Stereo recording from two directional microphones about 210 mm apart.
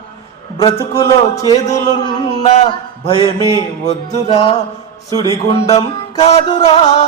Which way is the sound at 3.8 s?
30° left (ahead or behind).